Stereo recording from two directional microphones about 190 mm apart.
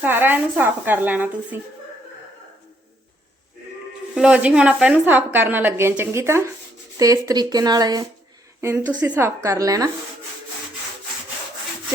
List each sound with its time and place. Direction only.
0.0 s speech: 10° right (ahead or behind)
4.1 s speech: 5° right (ahead or behind); by 8.0 s 20° right (ahead or behind)
8.9 s speech: 5° right (ahead or behind)